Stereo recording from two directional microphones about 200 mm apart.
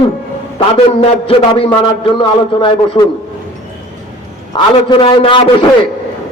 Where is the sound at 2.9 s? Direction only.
20° left (ahead or behind).